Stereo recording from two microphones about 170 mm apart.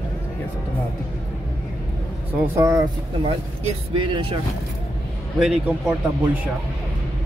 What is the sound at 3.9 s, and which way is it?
Speech, 30° right (ahead or behind).